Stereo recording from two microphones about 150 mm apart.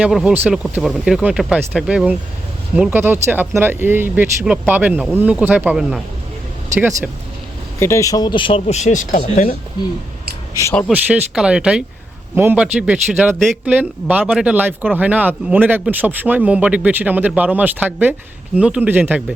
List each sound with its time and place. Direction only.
0.0 s speech: 5° right (ahead or behind)
7.8 s speech: 20° left (ahead or behind); by 9.6 s 60° left (ahead or behind)
10.9 s speech: 10° right (ahead or behind)